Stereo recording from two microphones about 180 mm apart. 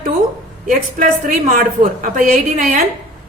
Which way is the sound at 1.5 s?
45° right (ahead or behind).